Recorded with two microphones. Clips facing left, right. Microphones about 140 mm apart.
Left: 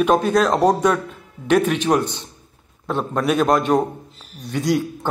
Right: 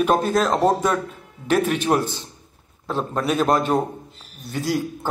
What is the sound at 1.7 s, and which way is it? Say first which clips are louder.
A man's voice: left 2 dB; 10° right (ahead or behind).